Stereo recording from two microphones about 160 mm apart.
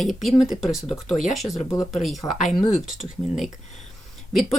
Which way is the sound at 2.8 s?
Centre (ahead or behind).